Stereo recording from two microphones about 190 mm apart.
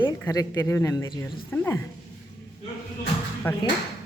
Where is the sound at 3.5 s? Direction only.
10° left (ahead or behind).